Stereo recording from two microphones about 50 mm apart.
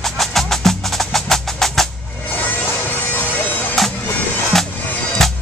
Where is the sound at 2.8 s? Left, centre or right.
Left.